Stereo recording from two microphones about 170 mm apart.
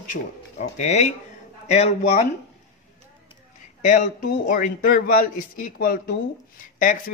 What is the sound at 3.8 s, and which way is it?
Speech, 45° left (ahead or behind).